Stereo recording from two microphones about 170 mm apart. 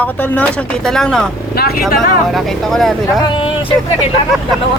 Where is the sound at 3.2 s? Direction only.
30° left (ahead or behind).